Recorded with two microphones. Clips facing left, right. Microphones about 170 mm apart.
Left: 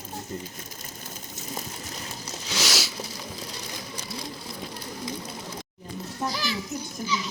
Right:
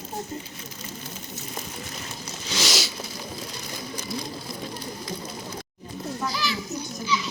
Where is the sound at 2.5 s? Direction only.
5° left (ahead or behind).